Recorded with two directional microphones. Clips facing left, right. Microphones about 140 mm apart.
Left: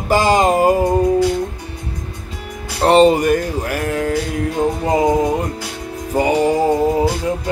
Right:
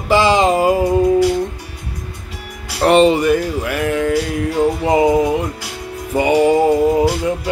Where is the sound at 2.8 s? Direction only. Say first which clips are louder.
Even; 35° left (ahead or behind).